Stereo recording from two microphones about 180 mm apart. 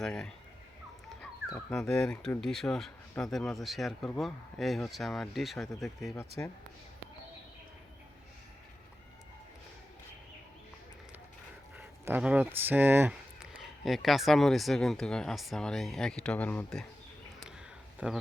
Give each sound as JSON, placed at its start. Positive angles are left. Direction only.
{"t": 0.0, "sound": "speech", "side_deg": 5}
{"t": 6.1, "sound": "speech", "side_deg": 15}
{"t": 11.8, "sound": "speech", "side_deg": -10}
{"t": 18.0, "sound": "speech", "side_deg": -5}